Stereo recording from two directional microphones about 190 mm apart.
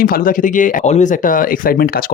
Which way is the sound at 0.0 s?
50° left (ahead or behind).